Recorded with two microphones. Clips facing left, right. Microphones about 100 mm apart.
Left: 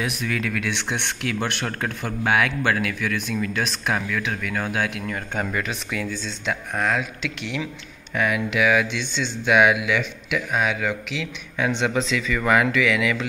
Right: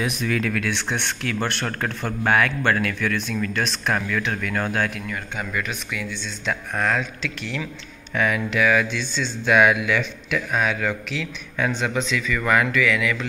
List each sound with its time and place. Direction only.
0.0 s speech: centre (ahead or behind)
0.7 s speech: 15° left (ahead or behind)
5.5 s speech: 30° left (ahead or behind)
6.4 s speech: 10° left (ahead or behind)